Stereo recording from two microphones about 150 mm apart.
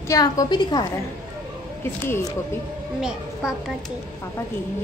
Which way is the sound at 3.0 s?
5° right (ahead or behind).